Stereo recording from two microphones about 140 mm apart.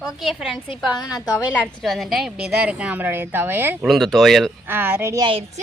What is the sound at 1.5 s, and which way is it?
A woman's voice, 5° left (ahead or behind).